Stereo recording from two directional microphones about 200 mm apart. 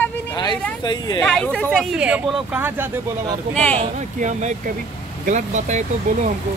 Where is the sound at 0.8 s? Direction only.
20° left (ahead or behind).